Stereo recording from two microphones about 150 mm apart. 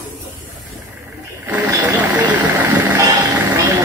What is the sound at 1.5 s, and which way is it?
Speech, 20° right (ahead or behind).